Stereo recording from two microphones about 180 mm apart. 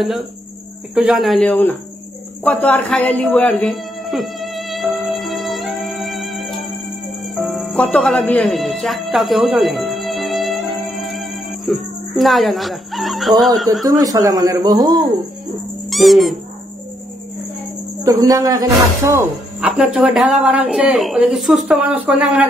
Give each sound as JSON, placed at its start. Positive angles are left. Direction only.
{"t": 0.9, "sound": "speech", "side_deg": -5}
{"t": 2.4, "sound": "music", "side_deg": 10}
{"t": 13.8, "sound": "speech", "side_deg": -20}
{"t": 15.9, "sound": "speech", "side_deg": 0}
{"t": 18.0, "sound": "speech", "side_deg": -20}
{"t": 19.7, "sound": "speech", "side_deg": -5}